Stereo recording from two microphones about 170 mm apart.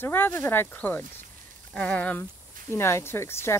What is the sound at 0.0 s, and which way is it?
Speech, 10° left (ahead or behind).